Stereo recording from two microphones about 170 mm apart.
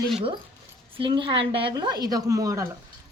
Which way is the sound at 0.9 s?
30° right (ahead or behind).